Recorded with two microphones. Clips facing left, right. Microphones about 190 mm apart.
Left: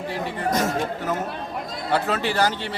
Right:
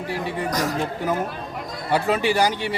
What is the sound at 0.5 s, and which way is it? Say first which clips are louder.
Speech: left 3 dB; 25° left (ahead or behind).